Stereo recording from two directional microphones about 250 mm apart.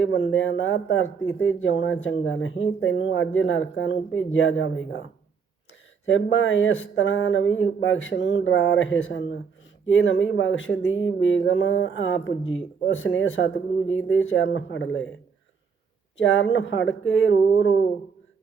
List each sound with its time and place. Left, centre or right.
0.0 s speech: left
6.1 s speech: left
16.1 s speech: left